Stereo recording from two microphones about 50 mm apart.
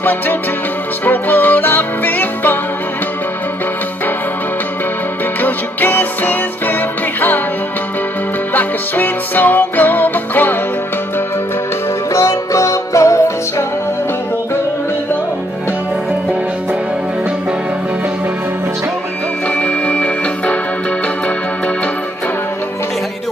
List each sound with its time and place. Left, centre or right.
1.0 s music: left
5.4 s music: left
8.5 s music: left
12.1 s music: left
19.6 s music: left